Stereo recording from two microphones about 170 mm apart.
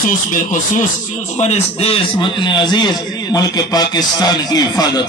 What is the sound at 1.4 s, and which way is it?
Speech, 40° left (ahead or behind).